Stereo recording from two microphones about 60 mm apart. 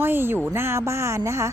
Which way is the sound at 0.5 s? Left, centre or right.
Right.